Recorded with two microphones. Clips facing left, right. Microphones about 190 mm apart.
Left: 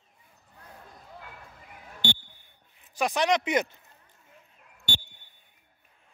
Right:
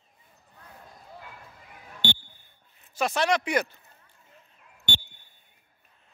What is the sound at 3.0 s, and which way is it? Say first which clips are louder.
Speech: even; 15° left (ahead or behind).